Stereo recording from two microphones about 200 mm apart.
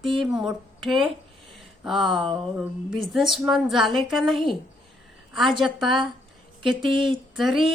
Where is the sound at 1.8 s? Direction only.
Centre (ahead or behind).